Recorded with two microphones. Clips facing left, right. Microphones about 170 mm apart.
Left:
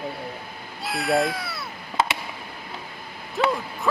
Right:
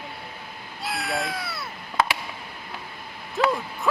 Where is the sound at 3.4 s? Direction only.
Centre (ahead or behind).